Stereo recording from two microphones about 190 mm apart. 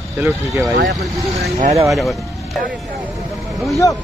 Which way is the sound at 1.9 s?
Centre (ahead or behind).